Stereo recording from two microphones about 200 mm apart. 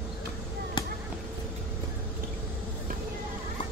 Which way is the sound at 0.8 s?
20° left (ahead or behind).